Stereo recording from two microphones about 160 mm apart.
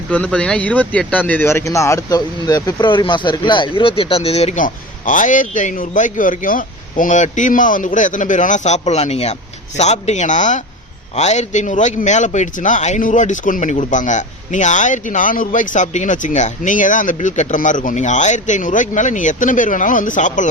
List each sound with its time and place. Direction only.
0.1 s speech: 5° left (ahead or behind); by 4.6 s 40° left (ahead or behind)
4.6 s a man's voice: 55° left (ahead or behind)